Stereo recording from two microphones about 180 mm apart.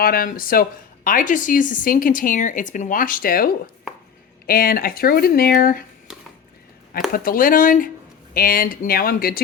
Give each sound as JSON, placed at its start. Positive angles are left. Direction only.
{"t": 0.0, "sound": "speech", "side_deg": 55}
{"t": 7.1, "sound": "speech", "side_deg": 50}